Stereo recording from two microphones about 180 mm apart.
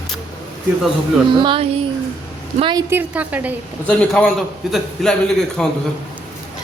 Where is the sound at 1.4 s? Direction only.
30° right (ahead or behind).